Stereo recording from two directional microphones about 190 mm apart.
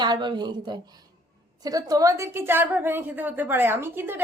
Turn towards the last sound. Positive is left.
turn(degrees=-10)  # may be behind; listen again after turning